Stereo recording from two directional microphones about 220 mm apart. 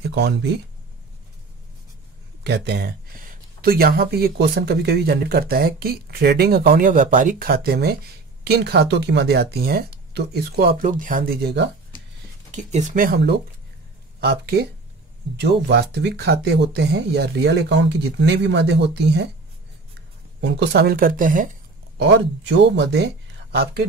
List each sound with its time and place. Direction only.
0.0 s speech: 50° right (ahead or behind)
2.4 s speech: 50° right (ahead or behind)
12.4 s speech: 35° right (ahead or behind); by 19.2 s 50° right (ahead or behind)
20.3 s speech: 50° right (ahead or behind)
21.9 s speech: 50° right (ahead or behind)